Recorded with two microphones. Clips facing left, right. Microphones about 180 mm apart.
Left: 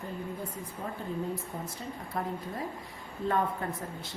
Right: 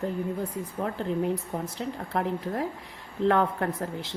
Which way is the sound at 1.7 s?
75° right (ahead or behind).